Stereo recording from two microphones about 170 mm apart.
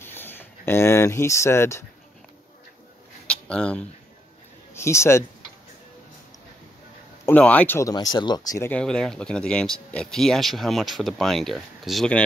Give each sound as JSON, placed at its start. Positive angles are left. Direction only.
{"t": 0.0, "sound": "speech", "side_deg": 10}
{"t": 3.3, "sound": "a sound", "side_deg": 5}
{"t": 4.7, "sound": "speech", "side_deg": 15}
{"t": 7.2, "sound": "speech", "side_deg": 10}
{"t": 7.9, "sound": "speech", "side_deg": 25}
{"t": 8.6, "sound": "speech", "side_deg": 5}